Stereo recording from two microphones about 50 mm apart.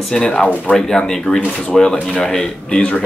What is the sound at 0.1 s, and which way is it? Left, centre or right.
Speech, centre.